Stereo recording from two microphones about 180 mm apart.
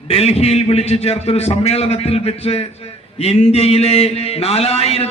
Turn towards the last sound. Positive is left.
turn(degrees=35)  # may be behind; listen again after turning